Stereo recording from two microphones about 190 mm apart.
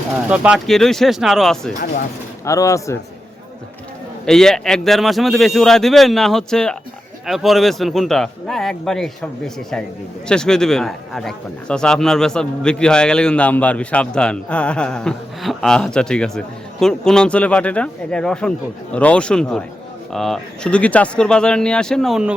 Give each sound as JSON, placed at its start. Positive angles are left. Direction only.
{"t": 0.3, "sound": "a man's voice", "side_deg": -5}
{"t": 2.4, "sound": "speech", "side_deg": 15}
{"t": 4.3, "sound": "a man's voice", "side_deg": 5}